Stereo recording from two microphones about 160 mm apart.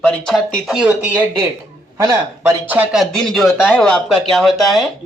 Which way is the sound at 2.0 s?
20° right (ahead or behind).